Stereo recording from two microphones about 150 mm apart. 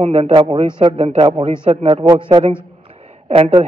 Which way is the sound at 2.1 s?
25° right (ahead or behind).